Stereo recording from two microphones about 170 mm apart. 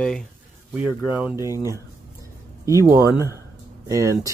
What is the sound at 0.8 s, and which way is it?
Speech, 5° right (ahead or behind).